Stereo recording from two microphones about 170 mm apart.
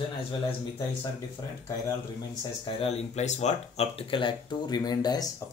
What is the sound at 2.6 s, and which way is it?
Speech, 35° left (ahead or behind).